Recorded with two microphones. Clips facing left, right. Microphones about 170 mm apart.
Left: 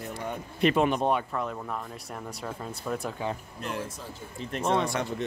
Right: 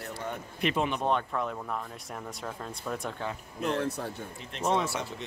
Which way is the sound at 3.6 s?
70° right (ahead or behind).